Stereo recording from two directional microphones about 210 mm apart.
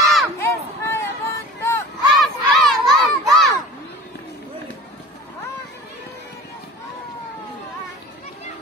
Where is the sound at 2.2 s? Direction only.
Centre (ahead or behind).